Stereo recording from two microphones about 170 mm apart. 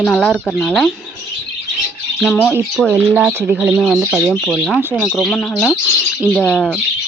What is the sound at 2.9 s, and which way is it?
Speech, 10° right (ahead or behind).